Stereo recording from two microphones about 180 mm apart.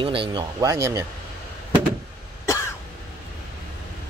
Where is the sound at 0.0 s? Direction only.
30° right (ahead or behind).